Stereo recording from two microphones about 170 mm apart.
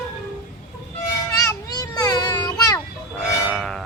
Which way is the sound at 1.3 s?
20° left (ahead or behind).